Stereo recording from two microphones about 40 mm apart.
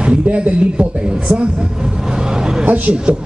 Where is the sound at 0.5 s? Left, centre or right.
Right.